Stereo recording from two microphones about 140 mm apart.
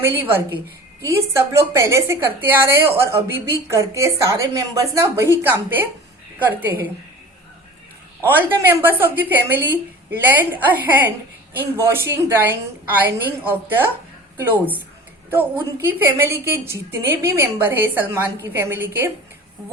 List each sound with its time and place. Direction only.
0.0 s a woman's voice: 15° right (ahead or behind)
8.2 s a woman's voice: 15° right (ahead or behind)